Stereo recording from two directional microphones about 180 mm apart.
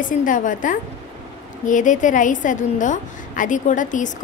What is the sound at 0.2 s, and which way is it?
A woman's voice, 45° left (ahead or behind).